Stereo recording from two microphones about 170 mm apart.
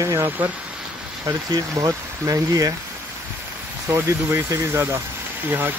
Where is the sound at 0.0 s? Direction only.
15° right (ahead or behind).